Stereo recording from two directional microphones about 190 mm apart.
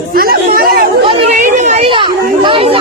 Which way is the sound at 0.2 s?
50° right (ahead or behind).